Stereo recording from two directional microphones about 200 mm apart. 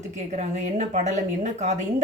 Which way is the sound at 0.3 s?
35° right (ahead or behind).